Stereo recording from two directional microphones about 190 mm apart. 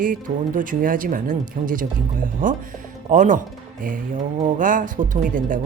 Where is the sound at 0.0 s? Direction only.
45° right (ahead or behind).